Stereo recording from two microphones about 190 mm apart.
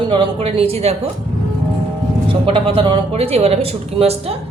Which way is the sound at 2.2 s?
30° right (ahead or behind).